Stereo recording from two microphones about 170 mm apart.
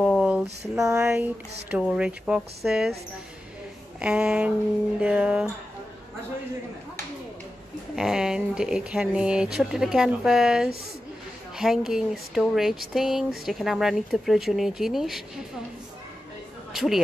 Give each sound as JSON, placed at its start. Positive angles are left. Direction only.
{"t": 0.0, "sound": "a sound", "side_deg": 5}
{"t": 0.7, "sound": "speech", "side_deg": -15}
{"t": 4.0, "sound": "speech", "side_deg": -5}
{"t": 7.9, "sound": "speech", "side_deg": -5}
{"t": 16.7, "sound": "speech", "side_deg": 0}